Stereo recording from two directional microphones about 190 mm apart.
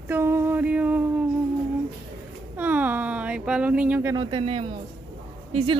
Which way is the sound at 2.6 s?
10° right (ahead or behind).